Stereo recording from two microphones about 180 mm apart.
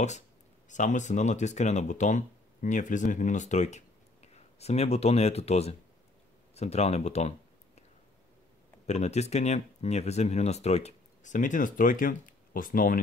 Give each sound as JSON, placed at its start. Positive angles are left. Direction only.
{"t": 0.7, "sound": "speech", "side_deg": 45}
{"t": 8.8, "sound": "speech", "side_deg": 40}